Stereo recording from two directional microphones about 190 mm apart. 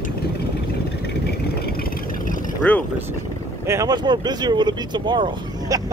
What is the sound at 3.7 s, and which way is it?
Speech, 20° right (ahead or behind).